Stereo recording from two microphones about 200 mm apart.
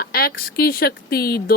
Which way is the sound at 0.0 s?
50° left (ahead or behind).